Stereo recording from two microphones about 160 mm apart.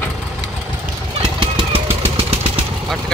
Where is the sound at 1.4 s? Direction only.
35° right (ahead or behind).